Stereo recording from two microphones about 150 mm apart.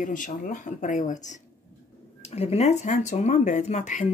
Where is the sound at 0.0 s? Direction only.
60° left (ahead or behind).